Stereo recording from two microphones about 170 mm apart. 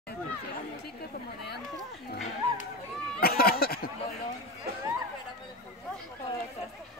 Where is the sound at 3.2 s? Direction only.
65° left (ahead or behind).